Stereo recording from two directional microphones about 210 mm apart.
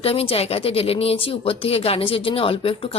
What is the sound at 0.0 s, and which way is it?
Speech, 25° left (ahead or behind).